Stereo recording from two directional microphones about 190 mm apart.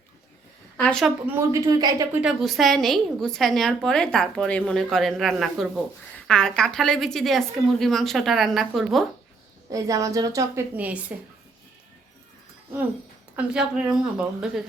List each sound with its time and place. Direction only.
0.8 s a woman's voice: 5° left (ahead or behind)
1.0 s a woman's voice: 10° right (ahead or behind)
2.2 s a woman's voice: centre (ahead or behind)
9.7 s a woman's voice: 20° right (ahead or behind)
13.3 s a woman's voice: 5° right (ahead or behind)